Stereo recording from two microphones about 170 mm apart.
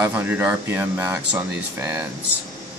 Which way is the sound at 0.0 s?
10° right (ahead or behind).